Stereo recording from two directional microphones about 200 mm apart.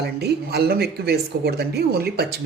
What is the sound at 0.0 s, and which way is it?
Speech, 55° right (ahead or behind).